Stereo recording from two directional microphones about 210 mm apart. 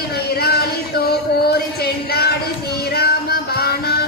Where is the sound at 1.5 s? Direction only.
50° left (ahead or behind).